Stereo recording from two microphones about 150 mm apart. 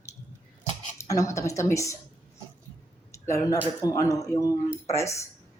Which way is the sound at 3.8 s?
20° left (ahead or behind).